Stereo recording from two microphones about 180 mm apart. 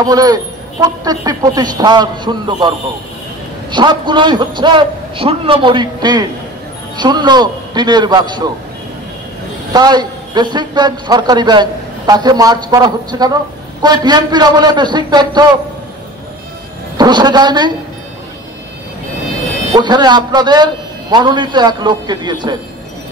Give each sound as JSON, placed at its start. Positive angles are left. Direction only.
{"t": 0.0, "sound": "a man's voice", "side_deg": -20}
{"t": 3.7, "sound": "a man's voice", "side_deg": -25}
{"t": 9.7, "sound": "a man's voice", "side_deg": -25}
{"t": 16.9, "sound": "a man's voice", "side_deg": -25}
{"t": 19.7, "sound": "a man's voice", "side_deg": -25}